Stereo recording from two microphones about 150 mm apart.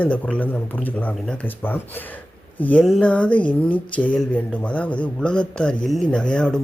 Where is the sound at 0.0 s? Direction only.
10° left (ahead or behind).